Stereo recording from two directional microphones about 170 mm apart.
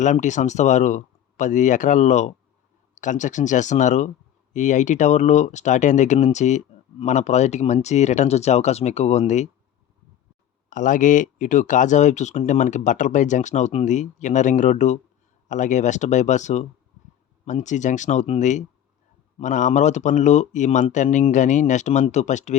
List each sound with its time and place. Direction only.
0.0 s speech: 45° left (ahead or behind)
10.7 s speech: 50° left (ahead or behind)